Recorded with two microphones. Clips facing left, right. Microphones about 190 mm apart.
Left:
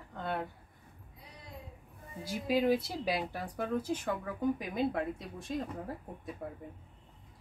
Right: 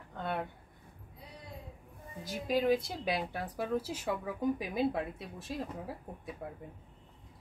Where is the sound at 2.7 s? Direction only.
5° left (ahead or behind).